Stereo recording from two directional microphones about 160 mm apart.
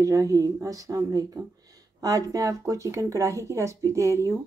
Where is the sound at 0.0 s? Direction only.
20° right (ahead or behind).